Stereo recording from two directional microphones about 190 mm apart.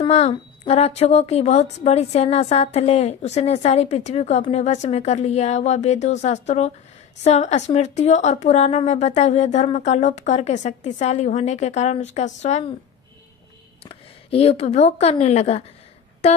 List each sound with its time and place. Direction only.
0.1 s a woman's voice: 35° left (ahead or behind)
13.8 s a woman's voice: 30° left (ahead or behind)